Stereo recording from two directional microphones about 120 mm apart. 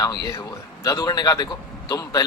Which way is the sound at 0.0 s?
30° left (ahead or behind).